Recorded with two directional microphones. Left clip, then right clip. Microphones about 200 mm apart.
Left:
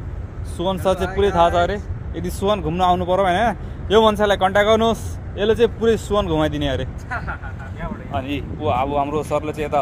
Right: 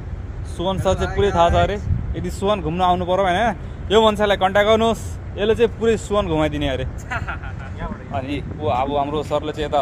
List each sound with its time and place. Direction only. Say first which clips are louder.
0.6 s speech: left 1 dB; centre (ahead or behind)
7.1 s speech: right 1 dB; 35° right (ahead or behind)
7.8 s a sound: left 1 dB; 5° left (ahead or behind)
8.5 s speech: even; 5° right (ahead or behind)